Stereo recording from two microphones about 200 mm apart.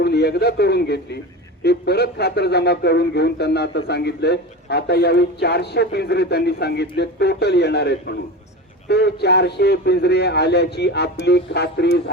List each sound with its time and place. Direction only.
0.0 s speech: 55° left (ahead or behind)